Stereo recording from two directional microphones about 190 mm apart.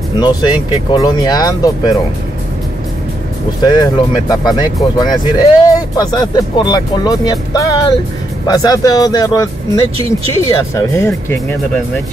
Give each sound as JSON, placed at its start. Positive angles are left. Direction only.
{"t": 0.2, "sound": "speech", "side_deg": 25}
{"t": 3.6, "sound": "speech", "side_deg": 20}
{"t": 10.6, "sound": "speech", "side_deg": 15}